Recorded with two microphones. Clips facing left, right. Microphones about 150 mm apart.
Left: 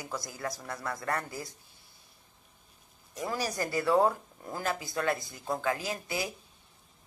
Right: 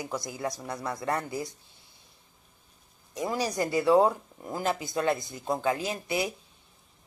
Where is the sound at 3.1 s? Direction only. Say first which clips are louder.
Right 4 dB; 20° right (ahead or behind).